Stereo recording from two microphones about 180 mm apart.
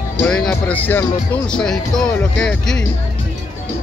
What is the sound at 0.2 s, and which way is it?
Speech, 5° left (ahead or behind).